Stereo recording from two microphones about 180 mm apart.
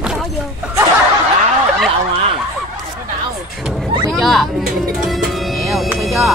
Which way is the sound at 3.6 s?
Centre (ahead or behind).